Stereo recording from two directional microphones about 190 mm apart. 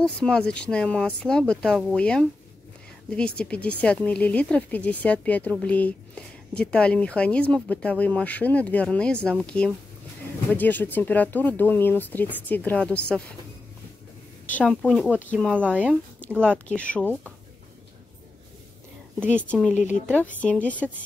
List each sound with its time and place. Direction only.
0.0 s speech: 5° left (ahead or behind)
14.4 s speech: 5° left (ahead or behind)
15.7 s speech: 10° right (ahead or behind)
16.2 s a sound: 5° left (ahead or behind)
16.6 s speech: 5° left (ahead or behind)
19.1 s speech: 5° left (ahead or behind)
19.7 s speech: 40° left (ahead or behind)
20.2 s speech: 10° left (ahead or behind)